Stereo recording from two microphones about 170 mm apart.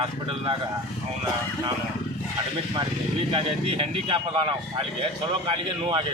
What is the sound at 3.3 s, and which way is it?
Speech, 35° right (ahead or behind).